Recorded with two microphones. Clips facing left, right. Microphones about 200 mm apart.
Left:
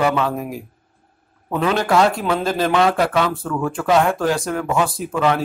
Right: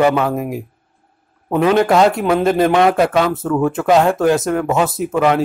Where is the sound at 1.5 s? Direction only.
20° right (ahead or behind).